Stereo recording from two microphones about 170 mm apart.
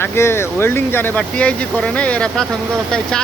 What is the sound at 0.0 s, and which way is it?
Speech, 15° left (ahead or behind).